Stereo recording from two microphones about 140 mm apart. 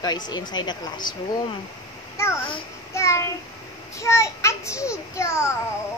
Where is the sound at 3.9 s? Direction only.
20° left (ahead or behind).